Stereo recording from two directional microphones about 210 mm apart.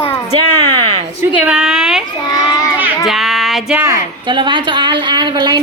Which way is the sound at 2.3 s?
20° left (ahead or behind).